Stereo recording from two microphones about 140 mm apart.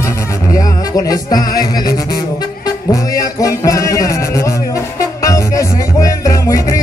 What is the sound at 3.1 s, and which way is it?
Music, 25° left (ahead or behind).